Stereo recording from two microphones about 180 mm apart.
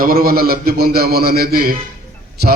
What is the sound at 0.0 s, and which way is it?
A man's voice, 55° right (ahead or behind).